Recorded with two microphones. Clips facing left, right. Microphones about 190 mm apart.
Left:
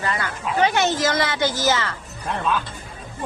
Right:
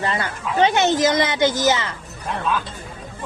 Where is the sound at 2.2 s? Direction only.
Centre (ahead or behind).